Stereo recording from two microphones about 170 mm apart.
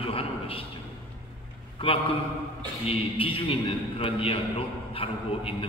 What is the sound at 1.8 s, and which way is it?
A man's voice, 35° left (ahead or behind).